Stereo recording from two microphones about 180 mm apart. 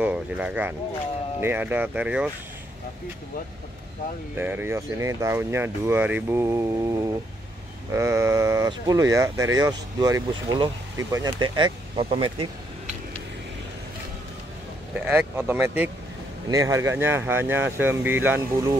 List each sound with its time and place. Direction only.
0.0 s speech: 5° right (ahead or behind)
4.4 s speech: 10° right (ahead or behind)
7.9 s speech: 15° right (ahead or behind)
15.0 s speech: 5° right (ahead or behind)